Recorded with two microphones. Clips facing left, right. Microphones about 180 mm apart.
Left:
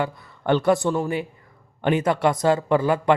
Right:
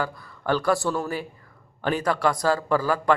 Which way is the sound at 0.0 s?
25° left (ahead or behind).